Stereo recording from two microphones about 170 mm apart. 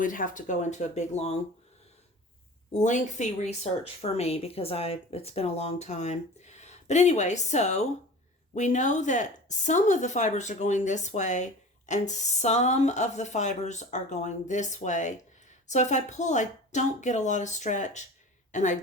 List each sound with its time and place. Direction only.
0.0 s speech: 50° left (ahead or behind)
2.7 s speech: 45° left (ahead or behind)